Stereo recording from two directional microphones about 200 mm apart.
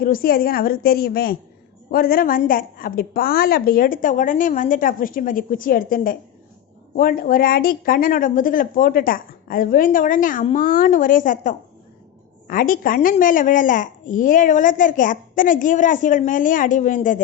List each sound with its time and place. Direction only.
0.0 s a child's voice: 45° left (ahead or behind)